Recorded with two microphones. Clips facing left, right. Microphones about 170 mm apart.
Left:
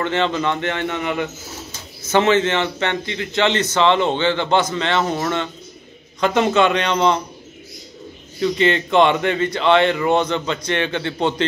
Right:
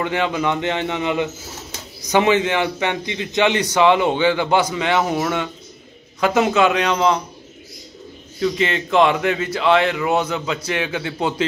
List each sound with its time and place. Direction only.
0.0 s a man's voice: 10° right (ahead or behind)
8.4 s speech: centre (ahead or behind)